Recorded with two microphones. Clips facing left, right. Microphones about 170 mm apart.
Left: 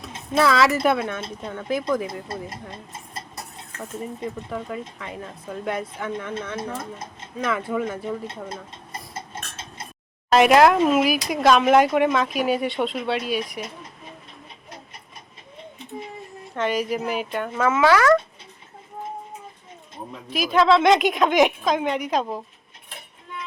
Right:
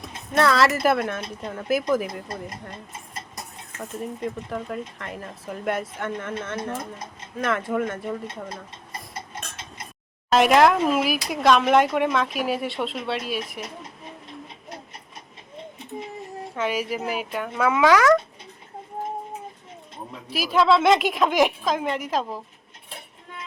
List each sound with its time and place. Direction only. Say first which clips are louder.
0.3 s speech: left 1 dB; centre (ahead or behind)
3.8 s speech: even; 5° left (ahead or behind)
8.4 s stir: left 2 dB; 25° left (ahead or behind)
10.3 s speech: left 2 dB; centre (ahead or behind)
16.6 s speech: left 3 dB; 5° right (ahead or behind)
20.3 s speech: left 1 dB; 5° right (ahead or behind)